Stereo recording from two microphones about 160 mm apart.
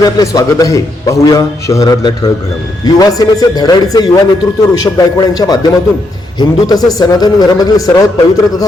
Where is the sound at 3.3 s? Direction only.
25° left (ahead or behind).